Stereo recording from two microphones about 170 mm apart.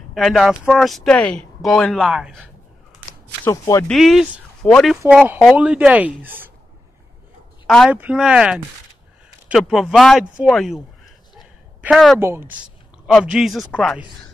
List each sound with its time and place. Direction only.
0.1 s speech: centre (ahead or behind)
3.4 s speech: 20° left (ahead or behind)
3.8 s speech: centre (ahead or behind)
5.0 s speech: 10° right (ahead or behind)
7.6 s speech: centre (ahead or behind)
11.3 s a sound: 5° right (ahead or behind)
12.2 s speech: 15° right (ahead or behind); by 13.9 s 10° left (ahead or behind)